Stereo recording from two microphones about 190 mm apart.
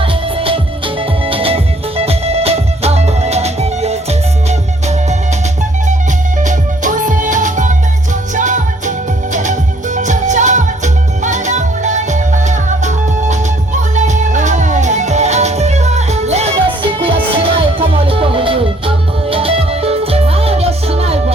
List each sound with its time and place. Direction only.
0.0 s music: 30° right (ahead or behind)
6.4 s music: 40° right (ahead or behind)